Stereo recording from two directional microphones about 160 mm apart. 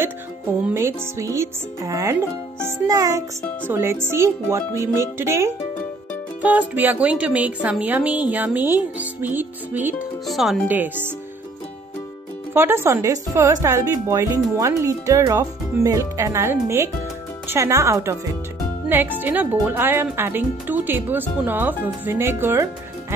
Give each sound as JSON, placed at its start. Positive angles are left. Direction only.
{"t": 0.7, "sound": "speech", "side_deg": -15}
{"t": 10.2, "sound": "speech", "side_deg": 0}
{"t": 12.5, "sound": "speech", "side_deg": -15}